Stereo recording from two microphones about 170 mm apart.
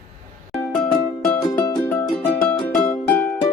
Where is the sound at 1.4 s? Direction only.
20° left (ahead or behind).